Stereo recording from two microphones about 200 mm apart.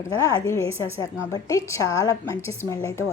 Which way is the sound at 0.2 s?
15° left (ahead or behind).